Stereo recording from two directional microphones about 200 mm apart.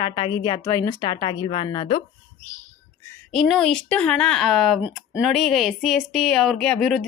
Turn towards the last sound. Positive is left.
turn(degrees=0)  # may be behind; listen again after turning